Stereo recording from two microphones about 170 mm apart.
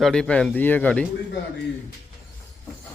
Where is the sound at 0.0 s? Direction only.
5° left (ahead or behind).